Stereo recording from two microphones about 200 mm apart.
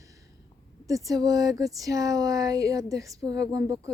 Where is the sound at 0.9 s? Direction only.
15° right (ahead or behind).